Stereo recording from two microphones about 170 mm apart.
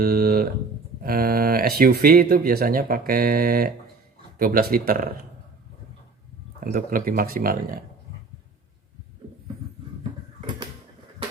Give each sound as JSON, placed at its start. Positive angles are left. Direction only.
{"t": 0.0, "sound": "a sound", "side_deg": -60}
{"t": 1.0, "sound": "speech", "side_deg": -60}
{"t": 6.7, "sound": "speech", "side_deg": -55}